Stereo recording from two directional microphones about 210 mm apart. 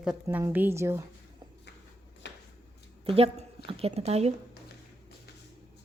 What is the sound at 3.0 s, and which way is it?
A woman's voice, 30° right (ahead or behind).